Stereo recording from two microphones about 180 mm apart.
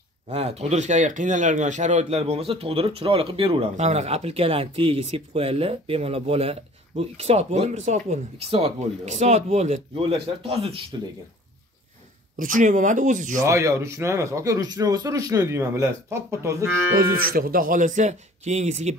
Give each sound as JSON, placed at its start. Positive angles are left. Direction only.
{"t": 0.3, "sound": "speech", "side_deg": -35}
{"t": 12.4, "sound": "speech", "side_deg": -45}
{"t": 13.4, "sound": "speech", "side_deg": -15}
{"t": 17.2, "sound": "speech", "side_deg": -50}